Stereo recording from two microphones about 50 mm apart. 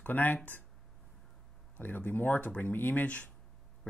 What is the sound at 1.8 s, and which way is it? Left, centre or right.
Speech, left.